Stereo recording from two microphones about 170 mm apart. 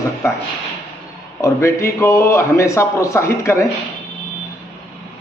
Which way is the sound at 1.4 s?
15° left (ahead or behind).